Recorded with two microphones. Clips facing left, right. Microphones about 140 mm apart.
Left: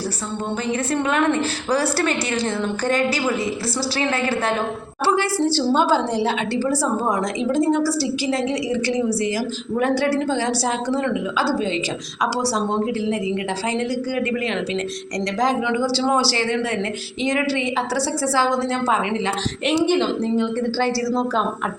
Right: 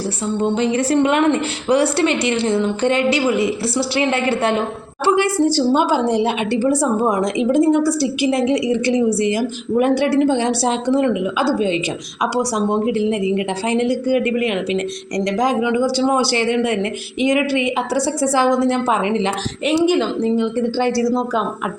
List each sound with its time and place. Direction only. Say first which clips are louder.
0.6 s a woman's voice: right 5 dB; 30° right (ahead or behind)
19.6 s a woman's voice: right 3 dB; 5° right (ahead or behind)
20.7 s a woman's voice: right 5 dB; 20° right (ahead or behind)